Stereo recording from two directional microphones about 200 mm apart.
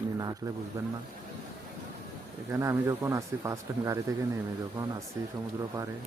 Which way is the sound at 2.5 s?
15° right (ahead or behind).